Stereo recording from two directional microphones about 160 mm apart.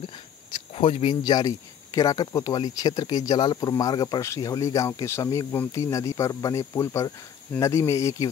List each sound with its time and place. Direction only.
0.5 s speech: 35° left (ahead or behind)
2.0 s speech: 25° left (ahead or behind)